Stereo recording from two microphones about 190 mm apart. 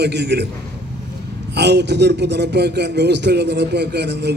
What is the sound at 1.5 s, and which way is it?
A man's voice, 65° right (ahead or behind).